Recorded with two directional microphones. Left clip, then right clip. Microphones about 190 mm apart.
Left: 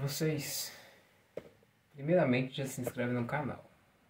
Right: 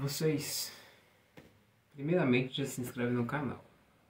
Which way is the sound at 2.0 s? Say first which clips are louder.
Left 1 dB; 10° left (ahead or behind).